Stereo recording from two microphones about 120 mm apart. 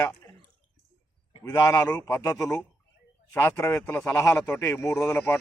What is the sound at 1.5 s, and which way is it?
Speech, 30° left (ahead or behind).